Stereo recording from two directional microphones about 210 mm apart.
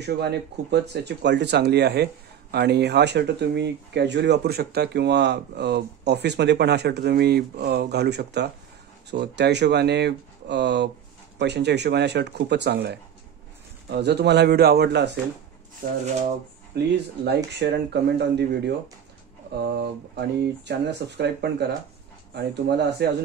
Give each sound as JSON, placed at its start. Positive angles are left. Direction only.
{"t": 0.0, "sound": "speech", "side_deg": -50}
{"t": 16.7, "sound": "speech", "side_deg": -50}
{"t": 20.2, "sound": "speech", "side_deg": -55}